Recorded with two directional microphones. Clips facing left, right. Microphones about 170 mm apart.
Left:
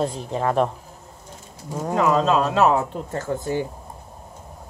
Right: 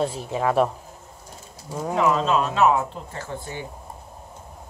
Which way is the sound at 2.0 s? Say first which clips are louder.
Left 2 dB; 40° left (ahead or behind).